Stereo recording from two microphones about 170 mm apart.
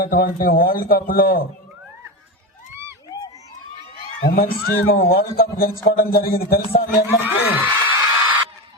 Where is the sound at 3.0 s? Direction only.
20° left (ahead or behind).